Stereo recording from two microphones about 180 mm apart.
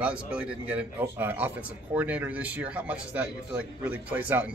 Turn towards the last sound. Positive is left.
turn(degrees=-10)  # may be behind; listen again after turning